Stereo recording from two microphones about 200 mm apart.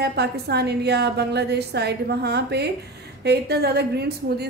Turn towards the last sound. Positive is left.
turn(degrees=-55)  # may be behind; listen again after turning